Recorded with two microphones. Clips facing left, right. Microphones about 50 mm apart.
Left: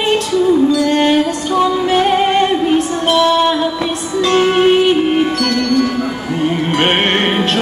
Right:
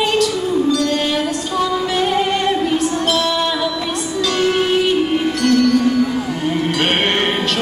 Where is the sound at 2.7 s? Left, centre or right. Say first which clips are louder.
Left 4 dB; centre.